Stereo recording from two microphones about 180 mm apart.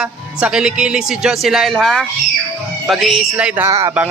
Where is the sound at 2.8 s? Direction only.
Centre (ahead or behind).